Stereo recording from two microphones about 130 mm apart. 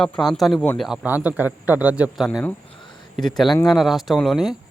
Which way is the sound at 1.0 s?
15° right (ahead or behind).